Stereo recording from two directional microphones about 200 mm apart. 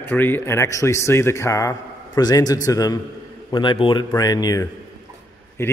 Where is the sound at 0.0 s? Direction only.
10° left (ahead or behind).